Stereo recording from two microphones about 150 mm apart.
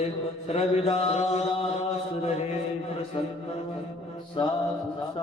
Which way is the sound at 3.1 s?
40° left (ahead or behind).